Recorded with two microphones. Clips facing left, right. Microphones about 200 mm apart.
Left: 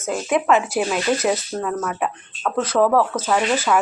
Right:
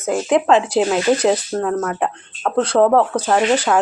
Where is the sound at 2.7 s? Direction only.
25° right (ahead or behind).